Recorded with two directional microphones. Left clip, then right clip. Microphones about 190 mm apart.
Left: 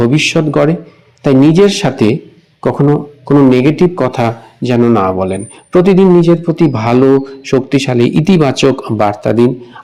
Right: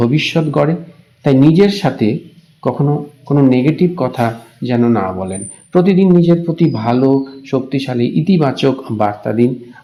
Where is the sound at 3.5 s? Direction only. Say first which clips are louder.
Left 4 dB; 10° left (ahead or behind).